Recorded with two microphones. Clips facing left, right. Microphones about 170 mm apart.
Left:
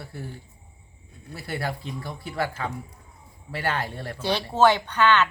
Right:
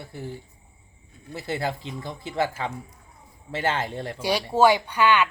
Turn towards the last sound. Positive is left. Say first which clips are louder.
# even
turn(degrees=-10)  # may be behind; listen again after turning